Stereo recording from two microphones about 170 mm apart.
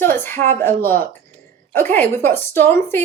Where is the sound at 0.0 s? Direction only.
15° left (ahead or behind).